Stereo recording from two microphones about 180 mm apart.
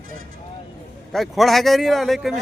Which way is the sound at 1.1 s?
Centre (ahead or behind).